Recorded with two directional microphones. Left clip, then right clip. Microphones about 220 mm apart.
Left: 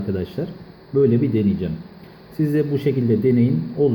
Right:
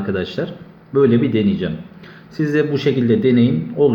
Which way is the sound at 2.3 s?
20° left (ahead or behind).